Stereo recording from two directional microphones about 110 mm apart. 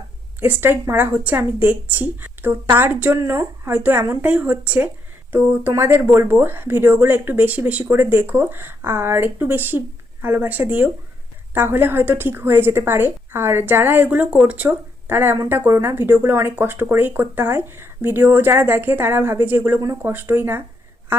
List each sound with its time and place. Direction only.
0.3 s a woman's voice: 20° right (ahead or behind)